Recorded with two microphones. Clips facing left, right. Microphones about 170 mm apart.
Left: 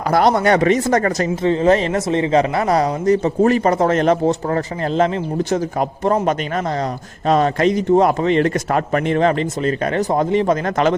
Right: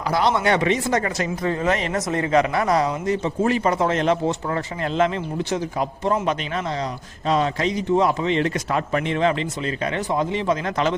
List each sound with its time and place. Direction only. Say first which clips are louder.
0.1 s speech: left 5 dB; 45° left (ahead or behind)
1.4 s speech: left 8 dB; 25° left (ahead or behind); by 10.9 s 50° left (ahead or behind)